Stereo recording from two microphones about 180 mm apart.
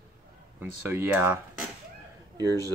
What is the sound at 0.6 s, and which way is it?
Speech, 10° right (ahead or behind).